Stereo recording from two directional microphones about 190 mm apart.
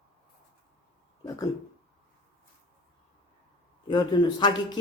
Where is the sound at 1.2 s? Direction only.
20° left (ahead or behind).